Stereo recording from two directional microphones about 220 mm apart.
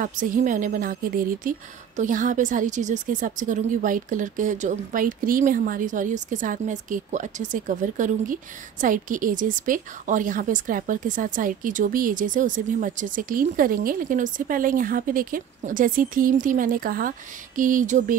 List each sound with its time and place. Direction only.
0.0 s a woman's voice: 35° right (ahead or behind)